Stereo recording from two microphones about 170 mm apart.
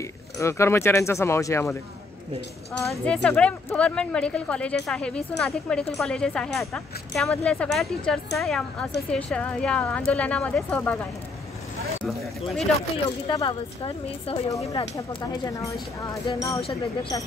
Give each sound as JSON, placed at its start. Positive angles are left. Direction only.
{"t": 0.4, "sound": "a woman's voice", "side_deg": 15}
{"t": 2.9, "sound": "a woman's voice", "side_deg": 5}
{"t": 12.9, "sound": "speech", "side_deg": 25}
{"t": 14.5, "sound": "speech", "side_deg": 20}